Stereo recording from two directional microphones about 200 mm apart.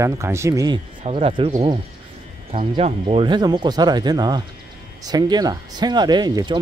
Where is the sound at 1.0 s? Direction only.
30° right (ahead or behind).